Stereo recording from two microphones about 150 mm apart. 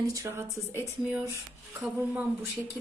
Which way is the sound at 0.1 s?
20° right (ahead or behind).